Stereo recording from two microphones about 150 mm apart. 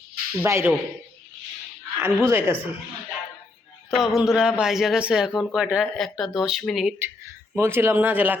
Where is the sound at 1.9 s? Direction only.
15° right (ahead or behind).